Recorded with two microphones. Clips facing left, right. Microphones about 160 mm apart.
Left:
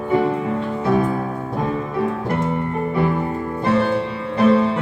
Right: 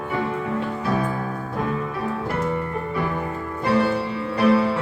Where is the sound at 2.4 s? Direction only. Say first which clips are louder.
Left 3 dB; 25° left (ahead or behind).